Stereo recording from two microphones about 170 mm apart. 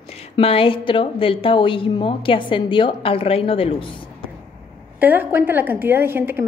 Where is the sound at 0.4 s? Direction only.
35° left (ahead or behind).